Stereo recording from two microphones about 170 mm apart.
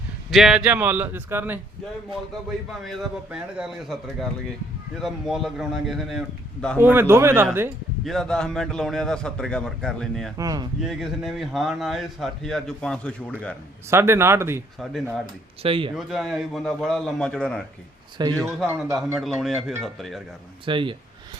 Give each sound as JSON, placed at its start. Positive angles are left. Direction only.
{"t": 0.3, "sound": "speech", "side_deg": 0}
{"t": 2.8, "sound": "a man's voice", "side_deg": 0}
{"t": 6.7, "sound": "speech", "side_deg": -10}
{"t": 8.0, "sound": "a man's voice", "side_deg": 0}
{"t": 10.3, "sound": "speech", "side_deg": -20}
{"t": 10.8, "sound": "a man's voice", "side_deg": 0}
{"t": 13.9, "sound": "speech", "side_deg": -15}
{"t": 15.6, "sound": "speech", "side_deg": -30}
{"t": 16.0, "sound": "a man's voice", "side_deg": 0}
{"t": 20.7, "sound": "speech", "side_deg": -30}